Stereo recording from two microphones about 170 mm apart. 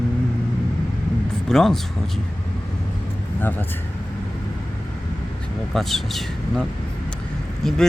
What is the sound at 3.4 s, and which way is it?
Speech, 10° left (ahead or behind).